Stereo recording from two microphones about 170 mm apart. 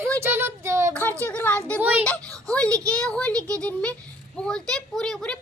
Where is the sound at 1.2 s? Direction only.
10° left (ahead or behind).